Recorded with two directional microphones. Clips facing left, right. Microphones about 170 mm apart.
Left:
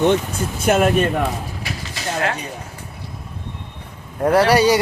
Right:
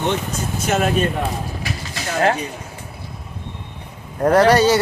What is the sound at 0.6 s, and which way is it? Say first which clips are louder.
Speech: left 4 dB; 55° left (ahead or behind).